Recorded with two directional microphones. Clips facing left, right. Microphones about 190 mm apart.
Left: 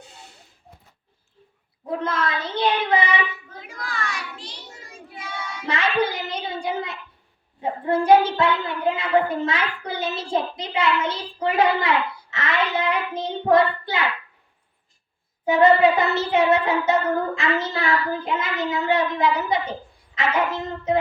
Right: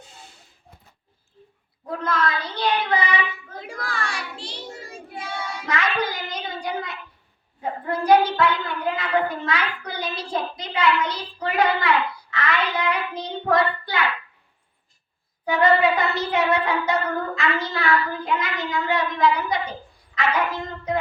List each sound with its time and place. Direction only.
1.9 s a woman's voice: 25° left (ahead or behind)
3.9 s child singing: 30° right (ahead or behind)
5.6 s music: 30° left (ahead or behind)
7.6 s a woman's voice: 25° left (ahead or behind)
15.4 s a woman's voice: 25° left (ahead or behind)